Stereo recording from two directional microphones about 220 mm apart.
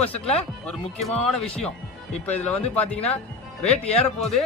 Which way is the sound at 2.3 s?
5° left (ahead or behind).